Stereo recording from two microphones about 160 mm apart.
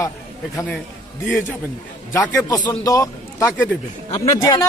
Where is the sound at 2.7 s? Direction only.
20° left (ahead or behind).